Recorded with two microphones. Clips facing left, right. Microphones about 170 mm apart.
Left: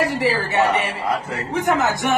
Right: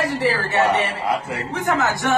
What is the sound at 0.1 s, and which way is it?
A woman's voice, 10° left (ahead or behind).